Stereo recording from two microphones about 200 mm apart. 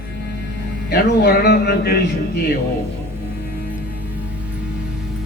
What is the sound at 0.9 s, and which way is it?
A man's voice, 55° left (ahead or behind).